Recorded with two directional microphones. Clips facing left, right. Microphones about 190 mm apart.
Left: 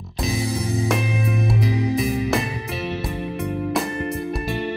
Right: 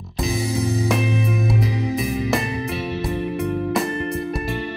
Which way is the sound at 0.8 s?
Centre (ahead or behind).